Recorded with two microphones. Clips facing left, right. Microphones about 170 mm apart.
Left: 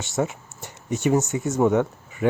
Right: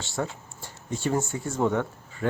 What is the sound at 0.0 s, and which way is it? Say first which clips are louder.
Speech: left 6 dB; 20° left (ahead or behind).